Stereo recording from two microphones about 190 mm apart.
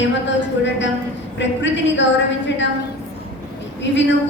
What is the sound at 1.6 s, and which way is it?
Speech, 70° left (ahead or behind).